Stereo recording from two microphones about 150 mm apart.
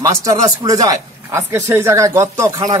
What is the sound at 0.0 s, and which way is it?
Speech, 25° right (ahead or behind).